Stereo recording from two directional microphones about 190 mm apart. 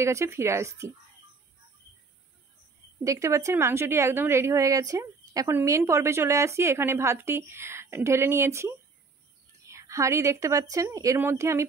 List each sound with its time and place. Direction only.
0.0 s a woman's voice: 15° right (ahead or behind)
3.0 s a woman's voice: 15° right (ahead or behind)